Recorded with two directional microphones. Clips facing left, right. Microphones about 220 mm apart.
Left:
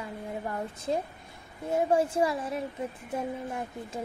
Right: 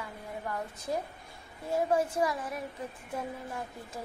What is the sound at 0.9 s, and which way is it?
A woman's voice, 25° left (ahead or behind).